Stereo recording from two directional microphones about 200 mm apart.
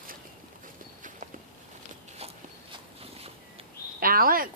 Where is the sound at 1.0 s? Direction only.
40° right (ahead or behind).